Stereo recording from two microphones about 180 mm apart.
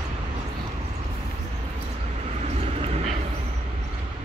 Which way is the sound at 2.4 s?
35° right (ahead or behind).